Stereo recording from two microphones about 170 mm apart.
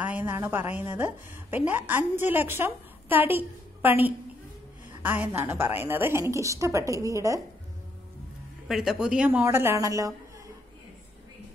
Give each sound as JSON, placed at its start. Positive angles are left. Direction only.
{"t": 0.0, "sound": "a woman's voice", "side_deg": -10}
{"t": 8.6, "sound": "a woman's voice", "side_deg": 0}